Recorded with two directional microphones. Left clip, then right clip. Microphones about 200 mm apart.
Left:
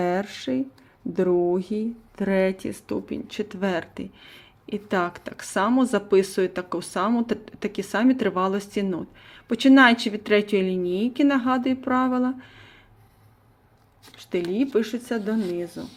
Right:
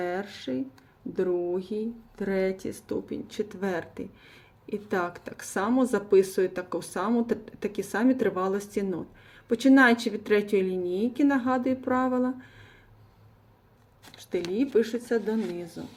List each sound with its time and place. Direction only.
0.0 s speech: 45° left (ahead or behind); by 12.6 s 25° left (ahead or behind)
14.2 s a sound: 30° left (ahead or behind)
14.5 s speech: 30° left (ahead or behind)